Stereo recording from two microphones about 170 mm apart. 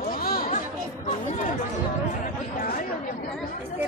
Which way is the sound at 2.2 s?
55° left (ahead or behind).